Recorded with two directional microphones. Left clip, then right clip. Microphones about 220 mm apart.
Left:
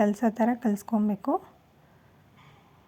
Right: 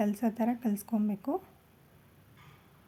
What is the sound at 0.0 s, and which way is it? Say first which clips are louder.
A woman's voice: left 7 dB; 10° left (ahead or behind).